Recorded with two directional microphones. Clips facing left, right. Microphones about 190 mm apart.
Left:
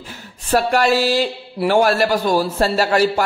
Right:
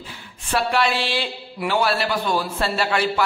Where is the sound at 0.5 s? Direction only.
45° left (ahead or behind).